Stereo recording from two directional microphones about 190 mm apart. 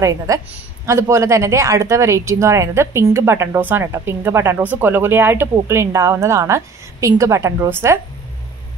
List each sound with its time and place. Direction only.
0.0 s speech: 15° right (ahead or behind)